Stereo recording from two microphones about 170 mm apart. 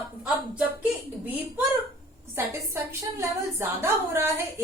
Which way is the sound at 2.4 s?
15° right (ahead or behind).